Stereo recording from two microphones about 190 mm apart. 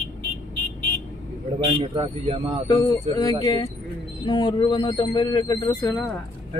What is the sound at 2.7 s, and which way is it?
Speech, 20° left (ahead or behind).